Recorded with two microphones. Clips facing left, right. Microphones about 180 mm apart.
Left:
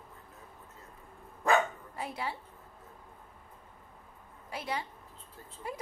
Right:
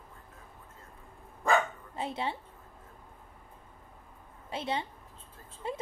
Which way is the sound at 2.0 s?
25° right (ahead or behind).